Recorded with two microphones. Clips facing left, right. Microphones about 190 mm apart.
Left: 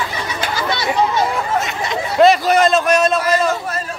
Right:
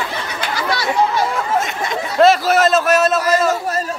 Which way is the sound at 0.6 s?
20° left (ahead or behind).